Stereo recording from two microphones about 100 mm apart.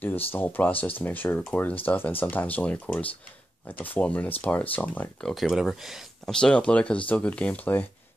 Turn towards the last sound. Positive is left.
turn(degrees=15)  # may be behind; listen again after turning